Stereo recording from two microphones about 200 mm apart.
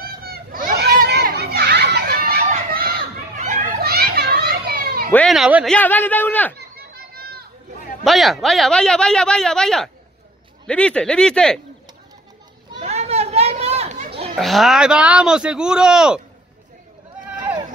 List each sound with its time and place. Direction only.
0.0 s children playing: 50° right (ahead or behind)
5.1 s speech: centre (ahead or behind)
5.8 s a man's voice: 10° left (ahead or behind)
6.8 s chatter: 50° right (ahead or behind)
8.0 s speech: centre (ahead or behind)
12.7 s chatter: 30° right (ahead or behind)
14.3 s speech: centre (ahead or behind)